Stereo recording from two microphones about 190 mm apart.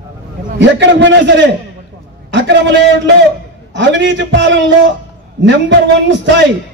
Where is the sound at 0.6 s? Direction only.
70° right (ahead or behind).